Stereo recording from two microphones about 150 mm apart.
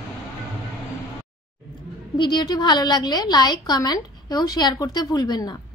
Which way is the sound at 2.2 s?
30° left (ahead or behind).